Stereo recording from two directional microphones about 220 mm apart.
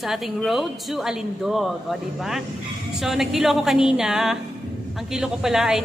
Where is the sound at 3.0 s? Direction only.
Centre (ahead or behind).